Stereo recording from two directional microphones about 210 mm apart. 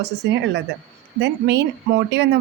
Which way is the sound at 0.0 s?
55° right (ahead or behind).